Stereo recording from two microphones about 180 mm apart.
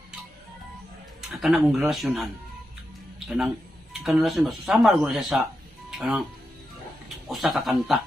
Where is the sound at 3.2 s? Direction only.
Centre (ahead or behind).